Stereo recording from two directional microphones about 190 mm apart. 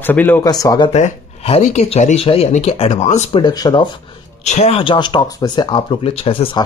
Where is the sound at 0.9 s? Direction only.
35° left (ahead or behind).